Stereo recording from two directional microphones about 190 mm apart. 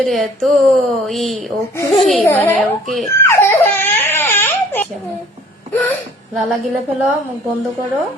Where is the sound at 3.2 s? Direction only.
10° left (ahead or behind).